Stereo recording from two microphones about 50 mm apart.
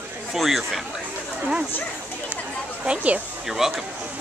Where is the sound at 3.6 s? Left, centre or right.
Centre.